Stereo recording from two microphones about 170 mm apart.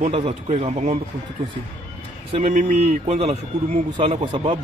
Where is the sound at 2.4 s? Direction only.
45° right (ahead or behind).